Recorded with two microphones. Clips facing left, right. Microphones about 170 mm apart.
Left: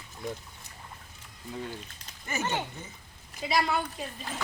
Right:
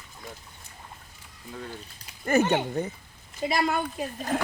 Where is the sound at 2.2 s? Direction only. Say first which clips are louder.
Right 10 dB; 60° right (ahead or behind).